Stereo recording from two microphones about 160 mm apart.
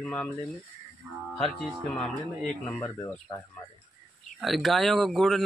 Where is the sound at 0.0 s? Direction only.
5° left (ahead or behind).